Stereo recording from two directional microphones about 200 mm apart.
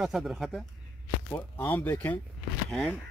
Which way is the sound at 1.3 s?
10° left (ahead or behind).